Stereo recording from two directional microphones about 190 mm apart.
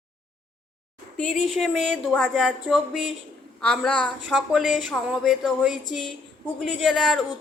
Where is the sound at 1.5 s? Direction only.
Centre (ahead or behind).